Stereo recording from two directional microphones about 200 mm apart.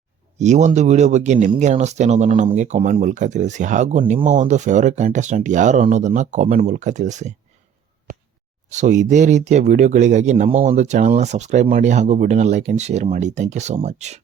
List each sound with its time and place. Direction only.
0.3 s speech: 35° right (ahead or behind)
8.7 s speech: 35° right (ahead or behind)